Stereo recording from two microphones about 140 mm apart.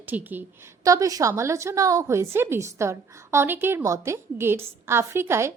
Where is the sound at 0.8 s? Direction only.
25° right (ahead or behind).